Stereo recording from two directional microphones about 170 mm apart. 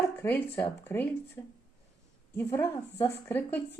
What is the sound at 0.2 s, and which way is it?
Speech, 10° left (ahead or behind).